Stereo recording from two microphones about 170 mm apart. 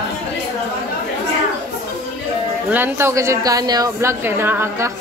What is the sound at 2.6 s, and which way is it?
A woman's voice, 10° right (ahead or behind).